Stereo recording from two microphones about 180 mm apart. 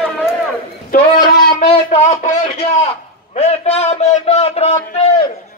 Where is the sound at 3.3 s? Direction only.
35° left (ahead or behind).